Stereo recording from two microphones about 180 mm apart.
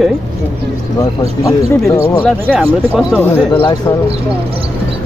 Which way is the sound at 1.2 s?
20° left (ahead or behind).